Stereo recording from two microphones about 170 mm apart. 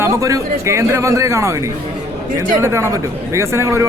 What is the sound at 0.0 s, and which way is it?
A man's voice, 15° right (ahead or behind).